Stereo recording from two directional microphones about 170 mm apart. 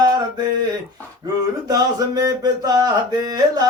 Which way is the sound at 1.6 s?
20° right (ahead or behind).